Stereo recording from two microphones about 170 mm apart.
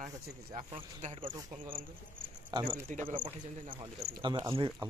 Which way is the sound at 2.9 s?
50° right (ahead or behind).